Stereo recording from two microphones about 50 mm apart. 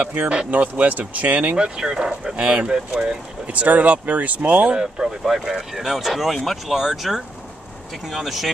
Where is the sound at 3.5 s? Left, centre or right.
Right.